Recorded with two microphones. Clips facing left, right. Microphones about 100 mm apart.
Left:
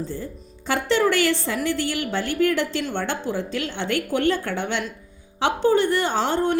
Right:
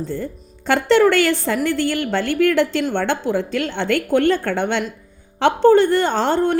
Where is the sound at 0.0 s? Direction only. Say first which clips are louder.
Right 5 dB; 60° right (ahead or behind).